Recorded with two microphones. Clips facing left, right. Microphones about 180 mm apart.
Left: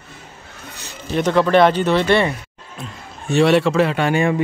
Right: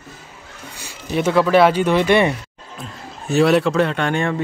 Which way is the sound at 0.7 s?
10° right (ahead or behind).